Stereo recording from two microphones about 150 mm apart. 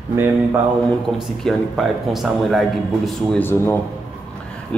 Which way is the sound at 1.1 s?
Centre (ahead or behind).